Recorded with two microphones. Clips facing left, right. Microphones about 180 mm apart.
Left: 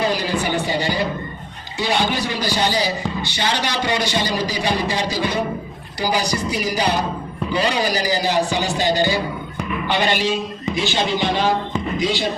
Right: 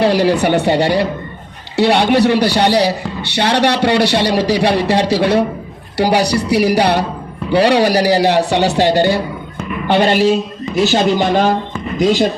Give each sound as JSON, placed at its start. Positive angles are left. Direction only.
{"t": 0.0, "sound": "a man's voice", "side_deg": -70}
{"t": 10.8, "sound": "speech", "side_deg": -50}